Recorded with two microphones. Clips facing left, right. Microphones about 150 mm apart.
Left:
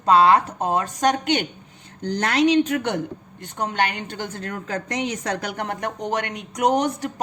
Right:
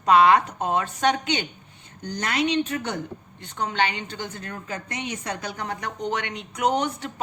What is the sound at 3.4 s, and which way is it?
Speech, 45° left (ahead or behind).